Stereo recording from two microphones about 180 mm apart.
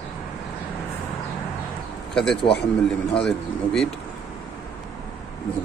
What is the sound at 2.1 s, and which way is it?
Speech, 5° left (ahead or behind).